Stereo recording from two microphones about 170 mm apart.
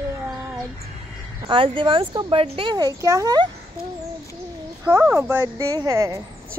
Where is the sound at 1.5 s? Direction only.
30° right (ahead or behind).